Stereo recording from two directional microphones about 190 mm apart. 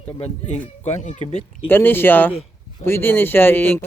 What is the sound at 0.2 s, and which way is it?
Speech, 35° left (ahead or behind).